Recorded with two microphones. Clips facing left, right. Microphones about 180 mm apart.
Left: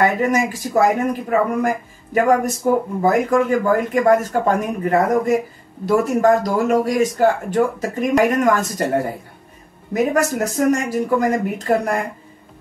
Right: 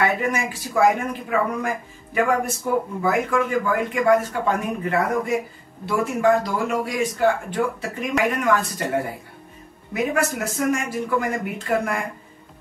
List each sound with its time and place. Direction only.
0.0 s speech: 40° left (ahead or behind)
2.1 s speech: 40° left (ahead or behind)